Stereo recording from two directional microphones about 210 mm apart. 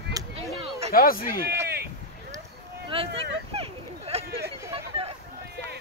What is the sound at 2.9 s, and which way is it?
Vehicle, 25° right (ahead or behind).